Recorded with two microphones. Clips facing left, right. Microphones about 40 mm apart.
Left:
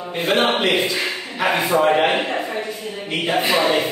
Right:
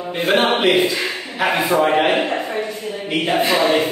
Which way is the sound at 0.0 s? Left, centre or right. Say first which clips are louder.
Right 2 dB; centre.